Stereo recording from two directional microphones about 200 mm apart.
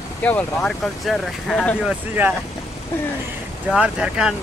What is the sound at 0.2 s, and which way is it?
Speech, 5° left (ahead or behind).